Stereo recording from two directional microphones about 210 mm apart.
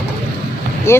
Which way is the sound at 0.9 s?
10° left (ahead or behind).